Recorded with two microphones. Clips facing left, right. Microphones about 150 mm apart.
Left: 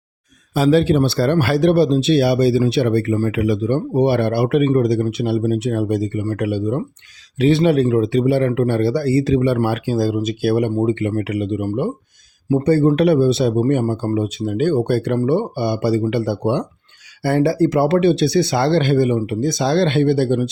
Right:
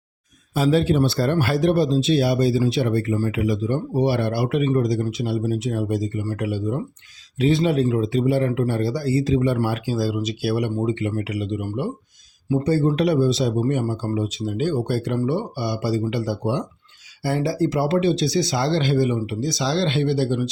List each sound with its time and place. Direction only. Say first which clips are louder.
0.5 s a man's voice: left 4 dB; 85° left; by 20.5 s 55° left (ahead or behind)